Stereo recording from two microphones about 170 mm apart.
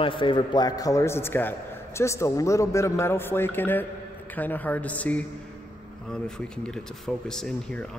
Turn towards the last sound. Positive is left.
turn(degrees=5)  # may be behind; listen again after turning